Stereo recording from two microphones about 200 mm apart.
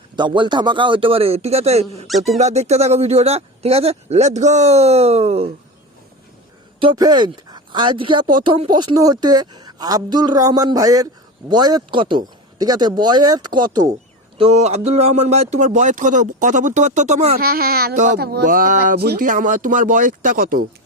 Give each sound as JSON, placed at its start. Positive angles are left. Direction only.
{"t": 0.2, "sound": "speech", "side_deg": -25}
{"t": 6.7, "sound": "speech", "side_deg": -20}
{"t": 14.3, "sound": "speech", "side_deg": -30}
{"t": 17.4, "sound": "speech", "side_deg": -50}